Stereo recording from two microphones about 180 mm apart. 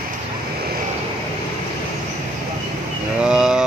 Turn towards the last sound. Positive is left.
turn(degrees=-5)  # may be behind; listen again after turning